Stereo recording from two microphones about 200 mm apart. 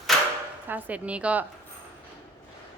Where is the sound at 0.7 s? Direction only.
5° right (ahead or behind).